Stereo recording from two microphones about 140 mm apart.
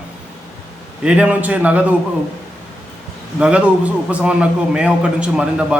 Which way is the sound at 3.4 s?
10° right (ahead or behind).